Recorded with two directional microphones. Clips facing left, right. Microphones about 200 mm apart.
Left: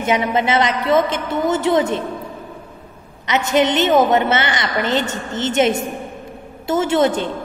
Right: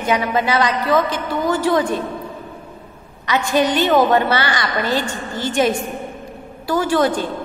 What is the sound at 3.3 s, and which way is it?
A woman's voice, 20° left (ahead or behind).